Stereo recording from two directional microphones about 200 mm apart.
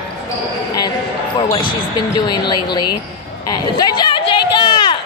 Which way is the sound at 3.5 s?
20° left (ahead or behind).